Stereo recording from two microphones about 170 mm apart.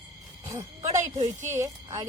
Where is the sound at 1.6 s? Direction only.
25° right (ahead or behind).